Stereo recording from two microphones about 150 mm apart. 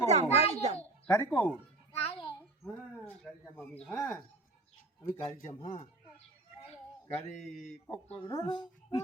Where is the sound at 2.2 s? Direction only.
10° left (ahead or behind).